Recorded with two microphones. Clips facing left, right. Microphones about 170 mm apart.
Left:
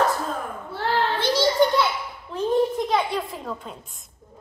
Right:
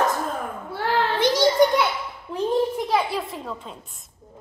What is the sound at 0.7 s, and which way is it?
Children playing, 15° right (ahead or behind).